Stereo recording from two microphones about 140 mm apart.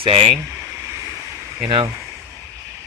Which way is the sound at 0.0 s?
45° right (ahead or behind).